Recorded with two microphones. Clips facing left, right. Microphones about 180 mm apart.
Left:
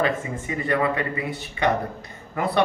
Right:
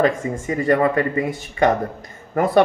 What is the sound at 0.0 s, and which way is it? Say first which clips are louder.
Speech: right 5 dB; 45° right (ahead or behind).